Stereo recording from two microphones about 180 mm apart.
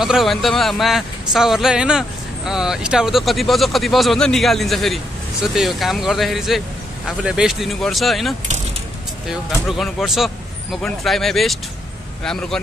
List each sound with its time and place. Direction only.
0.0 s speech: centre (ahead or behind)
9.7 s speech: centre (ahead or behind)